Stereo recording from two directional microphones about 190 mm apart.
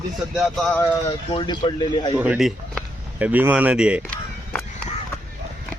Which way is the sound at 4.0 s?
10° left (ahead or behind).